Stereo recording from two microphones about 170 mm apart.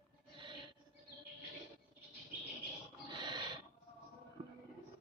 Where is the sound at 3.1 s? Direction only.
25° right (ahead or behind).